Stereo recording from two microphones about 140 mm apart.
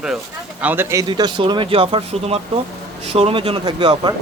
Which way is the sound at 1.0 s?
30° right (ahead or behind).